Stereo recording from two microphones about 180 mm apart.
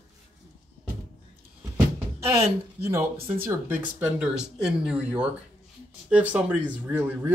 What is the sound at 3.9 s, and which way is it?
Speech, 5° right (ahead or behind).